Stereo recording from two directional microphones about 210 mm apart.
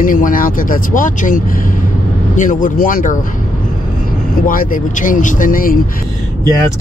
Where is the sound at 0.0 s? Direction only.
40° left (ahead or behind).